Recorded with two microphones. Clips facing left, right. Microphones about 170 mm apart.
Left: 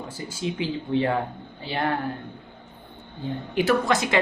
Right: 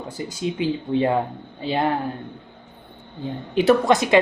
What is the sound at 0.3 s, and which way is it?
Speech, 15° right (ahead or behind).